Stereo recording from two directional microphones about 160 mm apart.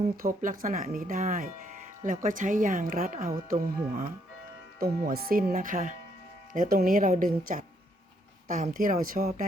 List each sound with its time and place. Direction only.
0.2 s speech: 60° right (ahead or behind)
4.8 s speech: 70° right (ahead or behind)